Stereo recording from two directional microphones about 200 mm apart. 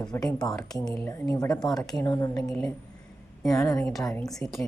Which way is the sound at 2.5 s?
5° left (ahead or behind).